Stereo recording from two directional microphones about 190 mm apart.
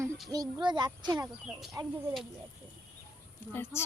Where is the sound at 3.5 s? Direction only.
10° left (ahead or behind).